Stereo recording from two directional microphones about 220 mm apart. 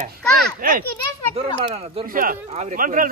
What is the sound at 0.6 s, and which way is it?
Speech, 40° right (ahead or behind).